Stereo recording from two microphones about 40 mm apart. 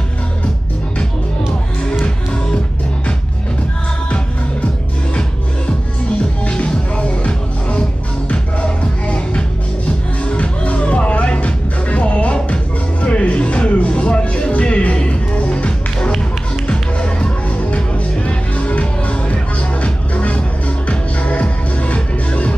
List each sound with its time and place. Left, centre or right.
6.4 s music: left